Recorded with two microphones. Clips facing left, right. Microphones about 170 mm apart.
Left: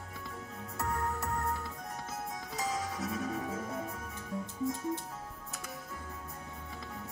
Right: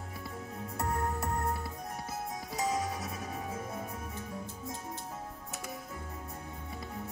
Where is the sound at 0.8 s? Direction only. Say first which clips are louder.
Right 1 dB; 30° right (ahead or behind).